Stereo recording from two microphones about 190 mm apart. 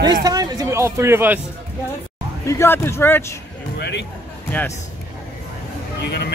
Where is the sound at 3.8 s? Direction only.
65° left (ahead or behind).